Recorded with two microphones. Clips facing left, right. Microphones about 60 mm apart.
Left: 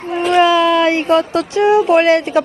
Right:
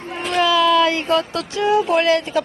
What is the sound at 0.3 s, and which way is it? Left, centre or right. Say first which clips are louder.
Speech: left 3 dB; left.